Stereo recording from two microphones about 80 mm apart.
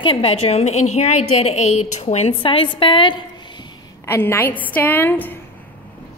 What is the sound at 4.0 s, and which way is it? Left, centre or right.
A woman's voice, left.